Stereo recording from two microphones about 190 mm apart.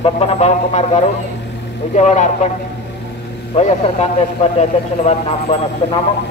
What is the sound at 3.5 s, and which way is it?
Speech, 30° left (ahead or behind).